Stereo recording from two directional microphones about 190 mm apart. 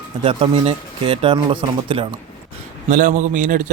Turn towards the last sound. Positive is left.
turn(degrees=-40)  # may be behind; listen again after turning